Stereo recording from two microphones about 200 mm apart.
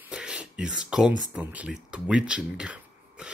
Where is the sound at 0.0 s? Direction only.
5° right (ahead or behind).